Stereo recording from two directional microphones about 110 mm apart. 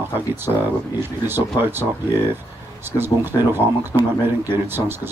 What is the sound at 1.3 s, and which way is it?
Speech, 20° right (ahead or behind).